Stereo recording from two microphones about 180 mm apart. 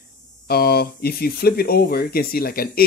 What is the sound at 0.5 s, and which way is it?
Speech, 60° left (ahead or behind).